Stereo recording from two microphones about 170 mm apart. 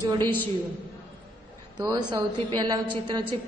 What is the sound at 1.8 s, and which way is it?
A woman's voice, 25° right (ahead or behind).